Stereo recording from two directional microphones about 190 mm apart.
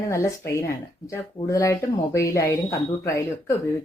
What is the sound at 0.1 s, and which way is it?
A woman's voice, 15° left (ahead or behind).